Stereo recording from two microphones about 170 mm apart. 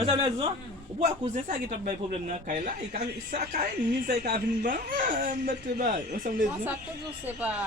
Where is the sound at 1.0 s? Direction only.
45° right (ahead or behind).